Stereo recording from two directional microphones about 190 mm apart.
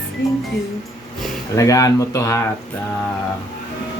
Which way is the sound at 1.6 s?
15° left (ahead or behind).